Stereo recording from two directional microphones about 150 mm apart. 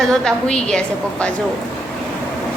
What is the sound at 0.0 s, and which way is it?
A woman's voice, 5° left (ahead or behind).